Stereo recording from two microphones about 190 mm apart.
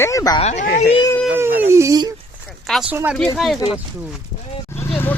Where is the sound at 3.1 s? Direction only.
5° left (ahead or behind).